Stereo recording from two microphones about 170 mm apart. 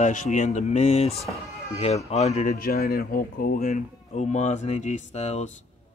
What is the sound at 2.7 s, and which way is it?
Speech, 65° left (ahead or behind).